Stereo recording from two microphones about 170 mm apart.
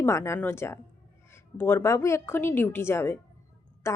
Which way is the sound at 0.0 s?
15° left (ahead or behind).